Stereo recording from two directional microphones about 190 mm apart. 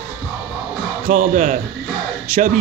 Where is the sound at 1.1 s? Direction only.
40° right (ahead or behind).